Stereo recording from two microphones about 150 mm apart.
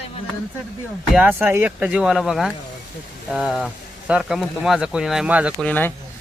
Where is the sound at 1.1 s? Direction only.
10° right (ahead or behind).